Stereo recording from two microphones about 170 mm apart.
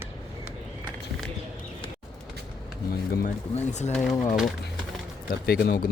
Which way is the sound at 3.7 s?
40° left (ahead or behind).